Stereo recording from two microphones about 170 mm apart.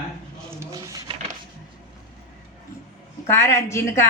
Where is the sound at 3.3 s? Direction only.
15° left (ahead or behind).